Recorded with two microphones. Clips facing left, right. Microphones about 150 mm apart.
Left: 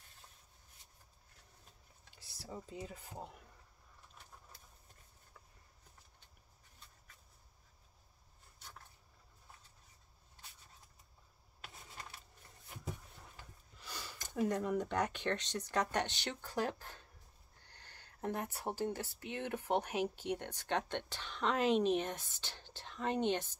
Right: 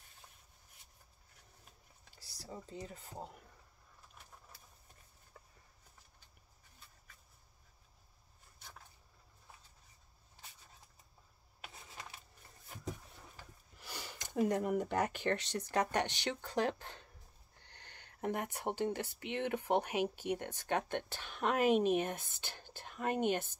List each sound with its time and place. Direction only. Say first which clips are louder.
2.0 s speech: even; centre (ahead or behind)
13.8 s a sound: right 1 dB; 15° right (ahead or behind)
14.5 s speech: right 2 dB; 10° right (ahead or behind)
18.7 s speech: right 3 dB; 15° right (ahead or behind)
19.1 s speech: right 4 dB; 70° right (ahead or behind)
19.9 s speech: right 2 dB; 10° right (ahead or behind)